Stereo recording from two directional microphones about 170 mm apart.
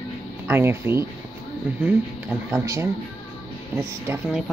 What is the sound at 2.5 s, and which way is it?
Speech, 15° right (ahead or behind).